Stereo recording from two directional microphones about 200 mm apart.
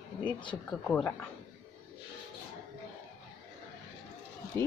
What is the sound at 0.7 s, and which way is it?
Speech, 5° left (ahead or behind).